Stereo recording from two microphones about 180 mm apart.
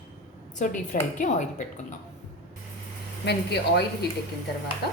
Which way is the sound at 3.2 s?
65° left (ahead or behind).